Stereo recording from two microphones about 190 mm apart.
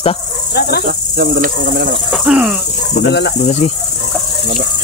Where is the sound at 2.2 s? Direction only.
5° right (ahead or behind).